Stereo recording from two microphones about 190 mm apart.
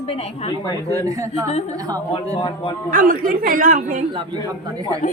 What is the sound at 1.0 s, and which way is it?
Speech, 20° right (ahead or behind).